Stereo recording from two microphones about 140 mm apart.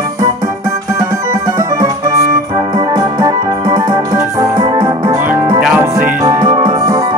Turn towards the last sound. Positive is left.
turn(degrees=-25)  # may be behind; listen again after turning